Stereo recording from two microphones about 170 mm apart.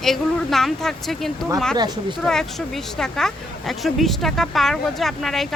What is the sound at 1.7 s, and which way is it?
Speech, 25° right (ahead or behind).